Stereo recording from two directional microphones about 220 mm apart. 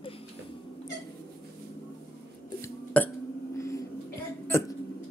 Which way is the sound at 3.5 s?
15° left (ahead or behind).